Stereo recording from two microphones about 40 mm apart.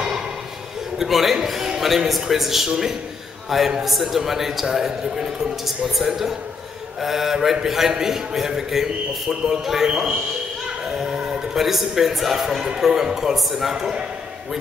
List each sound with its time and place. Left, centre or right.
0.9 s a man's voice: centre